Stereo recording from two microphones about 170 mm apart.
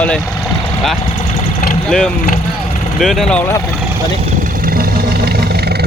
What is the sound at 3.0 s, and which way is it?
Speech, centre (ahead or behind).